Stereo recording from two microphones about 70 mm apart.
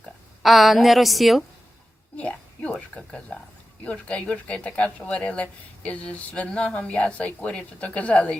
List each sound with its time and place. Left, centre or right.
0.4 s a woman's voice: centre
2.1 s a sound: centre
3.8 s speech: centre